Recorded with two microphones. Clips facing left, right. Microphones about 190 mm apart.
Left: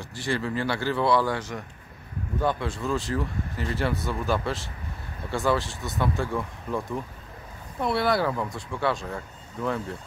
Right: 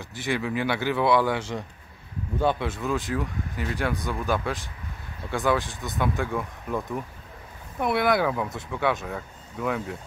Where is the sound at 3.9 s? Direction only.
15° right (ahead or behind).